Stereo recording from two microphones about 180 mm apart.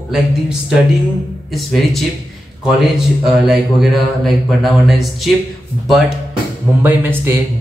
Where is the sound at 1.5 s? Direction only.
Centre (ahead or behind).